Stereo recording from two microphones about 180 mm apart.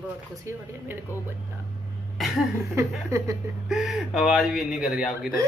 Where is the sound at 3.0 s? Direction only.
15° right (ahead or behind).